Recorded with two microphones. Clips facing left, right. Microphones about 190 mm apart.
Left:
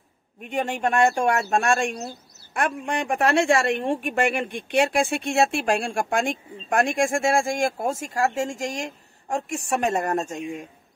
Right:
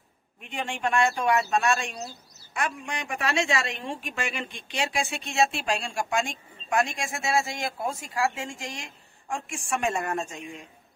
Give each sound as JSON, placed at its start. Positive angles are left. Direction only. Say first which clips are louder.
{"t": 0.4, "sound": "speech", "louder": "left 6 dB", "side_deg": 45}